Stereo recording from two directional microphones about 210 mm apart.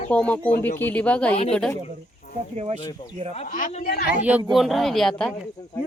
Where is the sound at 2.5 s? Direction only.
30° right (ahead or behind).